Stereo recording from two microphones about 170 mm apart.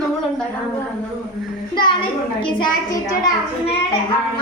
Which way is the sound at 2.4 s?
30° left (ahead or behind).